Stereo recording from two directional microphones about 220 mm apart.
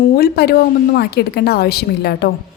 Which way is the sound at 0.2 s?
45° left (ahead or behind).